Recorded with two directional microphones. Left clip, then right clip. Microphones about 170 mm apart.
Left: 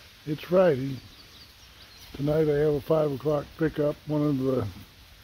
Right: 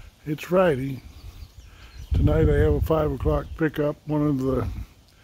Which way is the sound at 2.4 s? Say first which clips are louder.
Right 2 dB; 40° right (ahead or behind).